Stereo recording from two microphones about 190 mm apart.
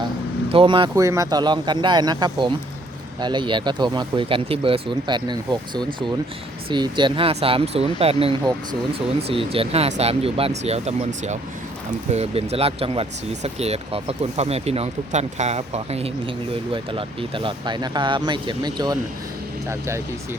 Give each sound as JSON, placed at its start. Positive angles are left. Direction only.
{"t": 0.5, "sound": "speech", "side_deg": -25}